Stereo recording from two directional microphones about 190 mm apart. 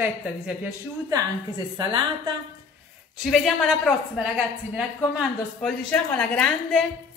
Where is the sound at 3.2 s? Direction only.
Centre (ahead or behind).